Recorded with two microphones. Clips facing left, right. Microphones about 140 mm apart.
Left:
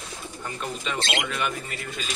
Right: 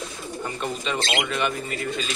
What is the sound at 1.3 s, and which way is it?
Speech, centre (ahead or behind).